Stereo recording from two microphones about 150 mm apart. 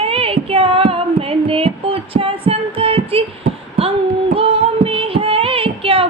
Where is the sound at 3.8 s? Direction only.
40° right (ahead or behind).